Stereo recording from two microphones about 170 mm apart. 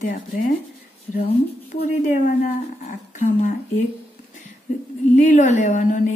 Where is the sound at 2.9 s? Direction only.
50° left (ahead or behind).